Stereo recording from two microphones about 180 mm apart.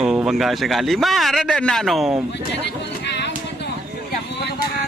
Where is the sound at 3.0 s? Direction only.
70° left (ahead or behind).